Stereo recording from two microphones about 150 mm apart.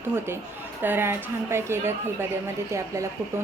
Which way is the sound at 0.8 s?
15° right (ahead or behind).